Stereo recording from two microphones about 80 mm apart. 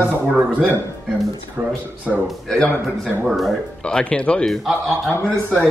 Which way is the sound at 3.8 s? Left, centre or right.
Centre.